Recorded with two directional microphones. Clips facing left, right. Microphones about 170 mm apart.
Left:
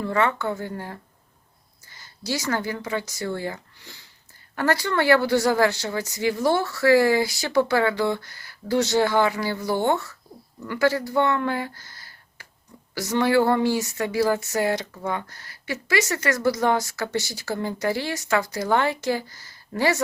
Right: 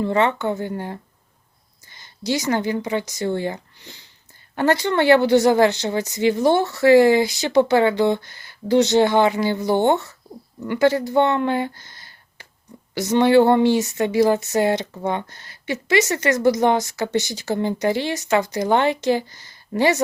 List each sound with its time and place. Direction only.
0.0 s speech: 20° right (ahead or behind)